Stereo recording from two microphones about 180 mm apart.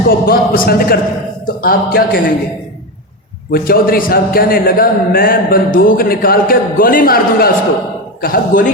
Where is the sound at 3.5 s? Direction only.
55° left (ahead or behind).